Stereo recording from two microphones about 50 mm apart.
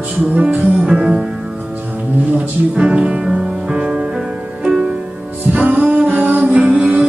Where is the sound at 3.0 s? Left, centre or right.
Centre.